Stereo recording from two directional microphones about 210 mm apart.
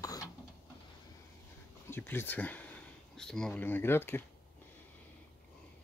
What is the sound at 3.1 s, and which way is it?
Speech, 5° left (ahead or behind).